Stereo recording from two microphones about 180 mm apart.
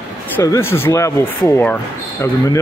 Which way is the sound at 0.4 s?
15° left (ahead or behind).